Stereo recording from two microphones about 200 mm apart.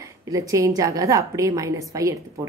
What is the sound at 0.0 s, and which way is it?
A woman's voice, 15° right (ahead or behind).